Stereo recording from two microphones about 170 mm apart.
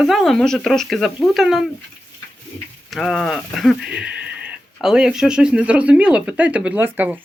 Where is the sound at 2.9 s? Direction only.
Centre (ahead or behind).